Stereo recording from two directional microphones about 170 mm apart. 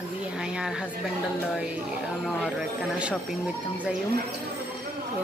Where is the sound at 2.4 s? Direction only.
5° right (ahead or behind).